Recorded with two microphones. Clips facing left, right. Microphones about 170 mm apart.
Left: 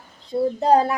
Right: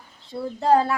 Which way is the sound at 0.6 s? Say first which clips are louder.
Even; 20° left (ahead or behind).